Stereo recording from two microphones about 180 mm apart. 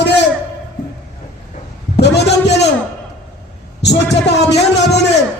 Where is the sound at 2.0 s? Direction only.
70° left (ahead or behind).